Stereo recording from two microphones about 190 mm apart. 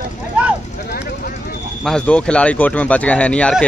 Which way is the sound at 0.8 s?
50° left (ahead or behind).